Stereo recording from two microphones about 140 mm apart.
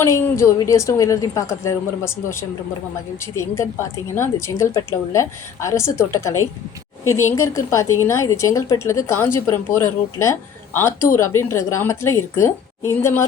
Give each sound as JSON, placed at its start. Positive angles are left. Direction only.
{"t": 0.0, "sound": "a woman's voice", "side_deg": 20}